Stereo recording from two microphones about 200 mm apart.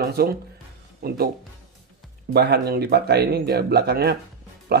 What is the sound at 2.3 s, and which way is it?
Speech, 50° right (ahead or behind).